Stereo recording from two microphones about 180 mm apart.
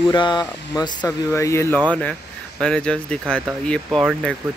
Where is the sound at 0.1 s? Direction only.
25° left (ahead or behind).